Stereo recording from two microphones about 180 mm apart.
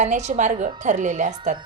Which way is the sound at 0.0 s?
40° right (ahead or behind).